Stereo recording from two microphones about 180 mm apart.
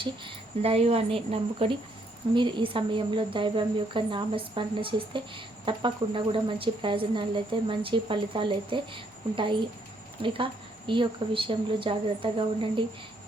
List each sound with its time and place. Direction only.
0.0 s a woman's voice: 30° right (ahead or behind)